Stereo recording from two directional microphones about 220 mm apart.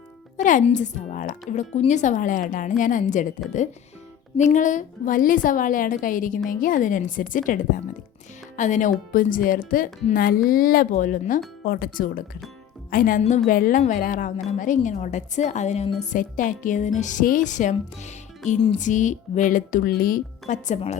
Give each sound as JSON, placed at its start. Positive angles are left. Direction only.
{"t": 0.3, "sound": "speech", "side_deg": 35}
{"t": 4.4, "sound": "speech", "side_deg": 35}